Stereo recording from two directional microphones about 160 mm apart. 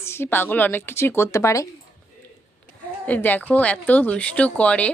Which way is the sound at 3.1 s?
10° left (ahead or behind).